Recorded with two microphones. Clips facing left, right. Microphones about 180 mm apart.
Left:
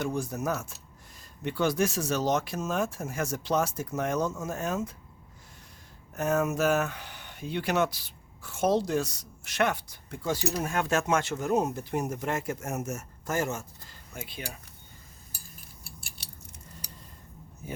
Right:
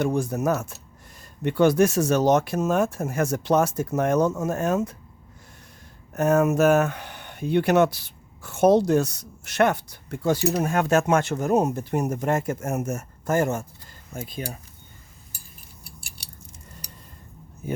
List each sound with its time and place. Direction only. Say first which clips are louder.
0.0 s speech: right 7 dB; 60° right (ahead or behind)
6.1 s speech: right 7 dB; 45° right (ahead or behind); by 10.6 s 65° right (ahead or behind)
10.6 s speech: right 7 dB; 45° right (ahead or behind)
14.1 s speech: right 7 dB; 45° right (ahead or behind)